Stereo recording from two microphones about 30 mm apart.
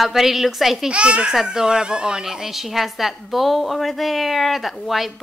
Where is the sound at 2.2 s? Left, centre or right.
Centre.